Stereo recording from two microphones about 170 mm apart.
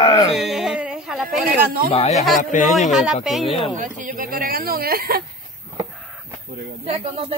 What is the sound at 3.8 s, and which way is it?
Speech, 50° right (ahead or behind).